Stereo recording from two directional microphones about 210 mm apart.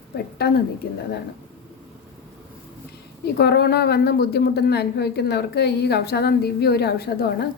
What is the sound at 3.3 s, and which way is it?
A woman's voice, 50° left (ahead or behind).